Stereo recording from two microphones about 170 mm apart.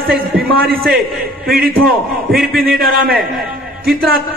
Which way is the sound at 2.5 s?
60° right (ahead or behind).